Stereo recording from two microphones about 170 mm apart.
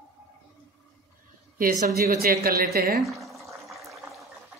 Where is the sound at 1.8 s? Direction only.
60° right (ahead or behind).